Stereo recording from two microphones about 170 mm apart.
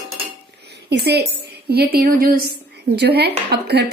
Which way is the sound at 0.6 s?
80° right.